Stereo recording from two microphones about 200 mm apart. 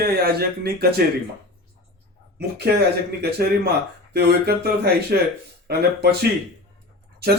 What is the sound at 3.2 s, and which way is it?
Speech, 55° right (ahead or behind).